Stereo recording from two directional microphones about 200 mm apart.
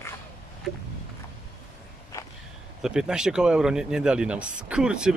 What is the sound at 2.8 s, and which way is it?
Speech, 5° right (ahead or behind).